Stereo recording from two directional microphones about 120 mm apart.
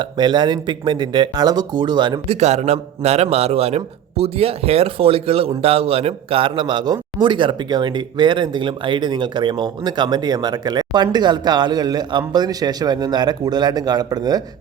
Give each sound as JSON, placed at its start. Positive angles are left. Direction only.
{"t": 0.0, "sound": "a man's voice", "side_deg": -40}
{"t": 2.2, "sound": "a man's voice", "side_deg": -60}